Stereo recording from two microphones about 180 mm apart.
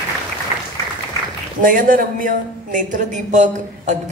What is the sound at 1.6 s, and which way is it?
Speech, 50° right (ahead or behind).